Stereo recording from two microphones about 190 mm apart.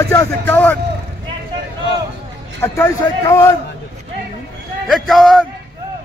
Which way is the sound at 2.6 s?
10° left (ahead or behind).